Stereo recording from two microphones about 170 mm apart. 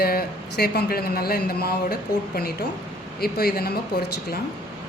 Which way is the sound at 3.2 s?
65° left (ahead or behind).